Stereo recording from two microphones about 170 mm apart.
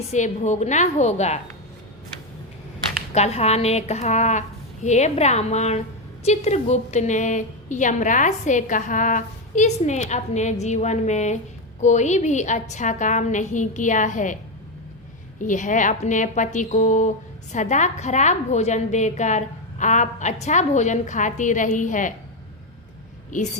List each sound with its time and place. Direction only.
0.1 s a woman's voice: 45° left (ahead or behind)
3.1 s a woman's voice: 40° left (ahead or behind)
15.4 s a woman's voice: 50° left (ahead or behind)
23.3 s a woman's voice: 50° left (ahead or behind)